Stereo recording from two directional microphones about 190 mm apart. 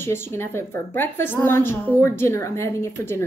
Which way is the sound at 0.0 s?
10° left (ahead or behind).